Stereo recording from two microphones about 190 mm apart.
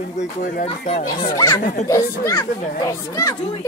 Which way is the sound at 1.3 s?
15° left (ahead or behind).